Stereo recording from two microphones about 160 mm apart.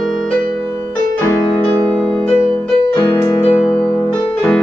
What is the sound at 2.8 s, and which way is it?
Music, 30° left (ahead or behind).